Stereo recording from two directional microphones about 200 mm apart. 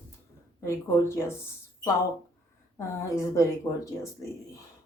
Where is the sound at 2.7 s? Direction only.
15° left (ahead or behind).